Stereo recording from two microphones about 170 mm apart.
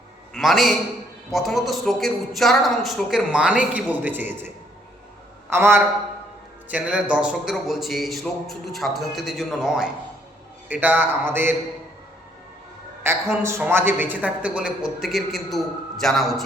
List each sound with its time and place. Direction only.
0.3 s a man's voice: centre (ahead or behind)
13.0 s a man's voice: 15° right (ahead or behind); by 16.3 s centre (ahead or behind)